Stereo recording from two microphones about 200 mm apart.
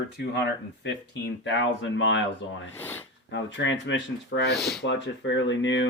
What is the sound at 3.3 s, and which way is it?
Speech, 65° left (ahead or behind).